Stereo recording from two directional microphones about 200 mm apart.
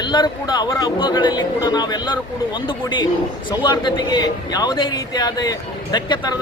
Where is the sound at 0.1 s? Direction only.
20° left (ahead or behind).